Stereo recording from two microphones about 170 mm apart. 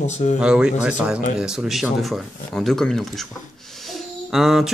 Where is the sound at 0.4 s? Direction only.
5° right (ahead or behind).